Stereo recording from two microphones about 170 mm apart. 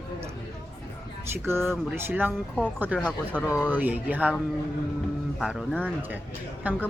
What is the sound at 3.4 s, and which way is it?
Speech, 15° left (ahead or behind).